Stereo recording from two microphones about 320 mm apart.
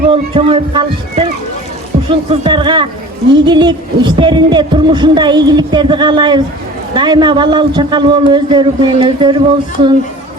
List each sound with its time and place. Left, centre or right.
0.1 s speech: centre